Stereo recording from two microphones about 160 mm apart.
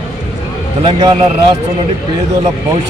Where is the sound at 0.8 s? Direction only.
30° right (ahead or behind).